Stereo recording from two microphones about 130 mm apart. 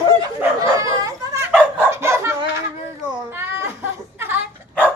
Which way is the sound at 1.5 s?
15° right (ahead or behind).